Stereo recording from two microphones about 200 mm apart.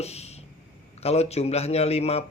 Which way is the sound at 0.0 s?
30° left (ahead or behind).